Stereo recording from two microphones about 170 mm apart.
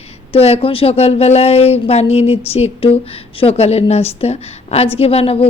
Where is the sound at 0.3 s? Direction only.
35° left (ahead or behind).